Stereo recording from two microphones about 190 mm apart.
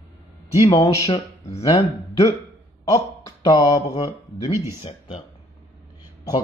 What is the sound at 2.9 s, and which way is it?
Speech, 15° left (ahead or behind).